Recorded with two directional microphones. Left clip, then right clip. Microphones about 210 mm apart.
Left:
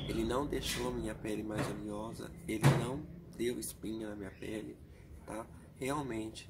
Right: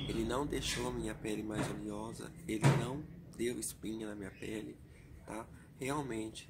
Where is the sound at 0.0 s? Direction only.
5° right (ahead or behind).